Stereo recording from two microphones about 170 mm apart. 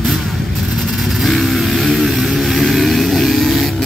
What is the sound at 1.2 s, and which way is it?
Vehicle, centre (ahead or behind).